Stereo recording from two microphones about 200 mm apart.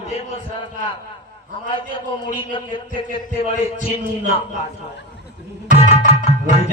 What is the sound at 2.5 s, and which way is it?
Speech, 25° left (ahead or behind).